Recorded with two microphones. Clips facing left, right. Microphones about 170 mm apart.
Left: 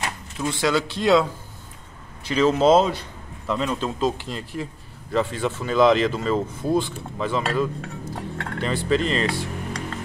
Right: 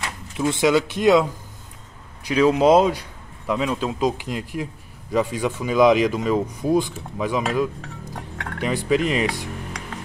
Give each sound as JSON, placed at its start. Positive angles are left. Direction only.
{"t": 0.5, "sound": "a man's voice", "side_deg": -20}